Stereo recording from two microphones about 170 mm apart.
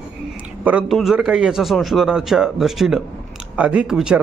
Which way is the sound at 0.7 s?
5° right (ahead or behind).